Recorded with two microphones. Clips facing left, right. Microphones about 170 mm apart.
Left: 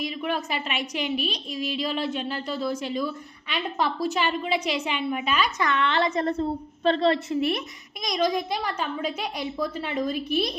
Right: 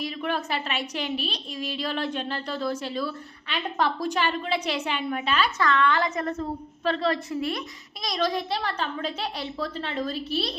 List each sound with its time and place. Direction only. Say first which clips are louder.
0.2 s a woman's voice: even; 10° left (ahead or behind)